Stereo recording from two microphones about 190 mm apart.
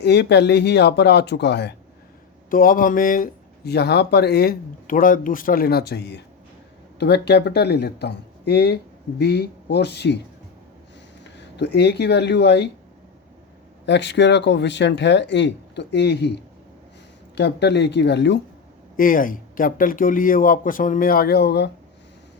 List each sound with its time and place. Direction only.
0.0 s speech: 60° left (ahead or behind)
2.5 s speech: 45° left (ahead or behind)
11.2 s speech: 65° left (ahead or behind)
13.8 s speech: 65° left (ahead or behind)
18.9 s speech: 45° left (ahead or behind)